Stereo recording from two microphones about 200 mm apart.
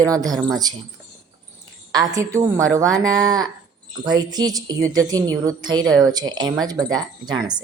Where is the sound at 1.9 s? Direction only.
15° right (ahead or behind).